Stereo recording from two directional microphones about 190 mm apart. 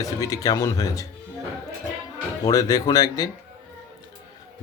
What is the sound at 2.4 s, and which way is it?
Speech, 20° left (ahead or behind).